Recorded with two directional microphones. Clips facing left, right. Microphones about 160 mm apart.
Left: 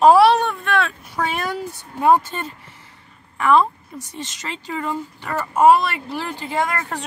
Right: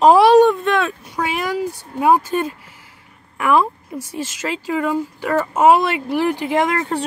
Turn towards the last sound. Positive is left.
turn(degrees=-20)  # may be behind; listen again after turning